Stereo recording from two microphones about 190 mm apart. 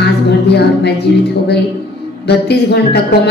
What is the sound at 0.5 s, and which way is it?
A woman's voice, 60° left (ahead or behind).